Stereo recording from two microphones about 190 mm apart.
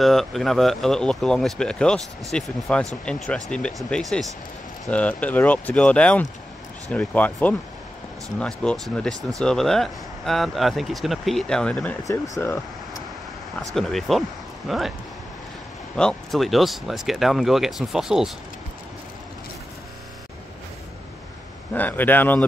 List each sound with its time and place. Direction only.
0.0 s speech: centre (ahead or behind)
13.7 s speech: centre (ahead or behind)
16.0 s speech: centre (ahead or behind)
21.7 s speech: 10° left (ahead or behind)